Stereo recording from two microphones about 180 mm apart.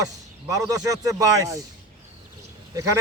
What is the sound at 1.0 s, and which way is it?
Speech, 20° right (ahead or behind).